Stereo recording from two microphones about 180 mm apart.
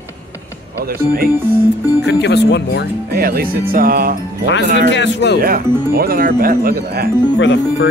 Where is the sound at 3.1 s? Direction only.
55° right (ahead or behind).